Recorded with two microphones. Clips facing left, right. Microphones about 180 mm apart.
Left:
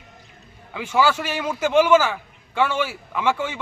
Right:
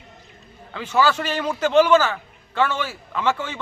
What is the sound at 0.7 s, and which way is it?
A man's voice, 10° left (ahead or behind).